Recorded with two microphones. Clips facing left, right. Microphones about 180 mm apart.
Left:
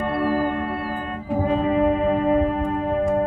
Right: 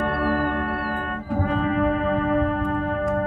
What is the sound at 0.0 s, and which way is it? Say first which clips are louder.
Music: left 1 dB; 15° left (ahead or behind).